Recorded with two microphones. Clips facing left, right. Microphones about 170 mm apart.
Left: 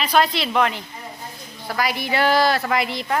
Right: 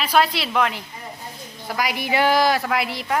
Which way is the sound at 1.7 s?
15° right (ahead or behind).